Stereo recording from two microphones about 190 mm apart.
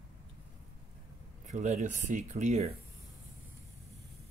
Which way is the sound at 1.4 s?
40° right (ahead or behind).